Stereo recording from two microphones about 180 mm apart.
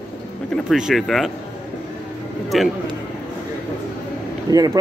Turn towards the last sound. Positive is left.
turn(degrees=-20)  # may be behind; listen again after turning